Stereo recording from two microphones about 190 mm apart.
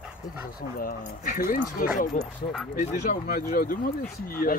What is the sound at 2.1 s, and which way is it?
Speech, centre (ahead or behind).